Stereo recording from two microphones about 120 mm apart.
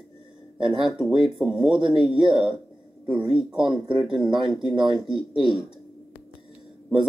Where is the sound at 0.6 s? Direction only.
45° right (ahead or behind).